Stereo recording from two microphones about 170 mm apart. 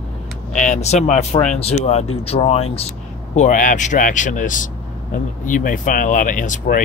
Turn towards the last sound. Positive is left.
turn(degrees=50)  # may be behind; listen again after turning